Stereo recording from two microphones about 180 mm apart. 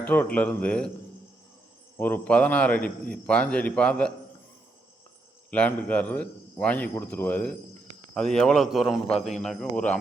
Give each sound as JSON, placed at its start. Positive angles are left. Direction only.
{"t": 0.0, "sound": "a man's voice", "side_deg": 10}
{"t": 2.0, "sound": "a man's voice", "side_deg": 10}
{"t": 5.5, "sound": "a man's voice", "side_deg": 10}